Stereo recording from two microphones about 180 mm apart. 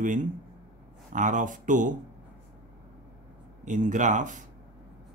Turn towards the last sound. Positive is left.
turn(degrees=-45)  # may be behind; listen again after turning